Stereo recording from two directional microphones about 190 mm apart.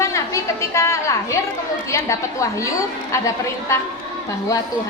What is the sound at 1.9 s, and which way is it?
A woman's voice, 15° left (ahead or behind).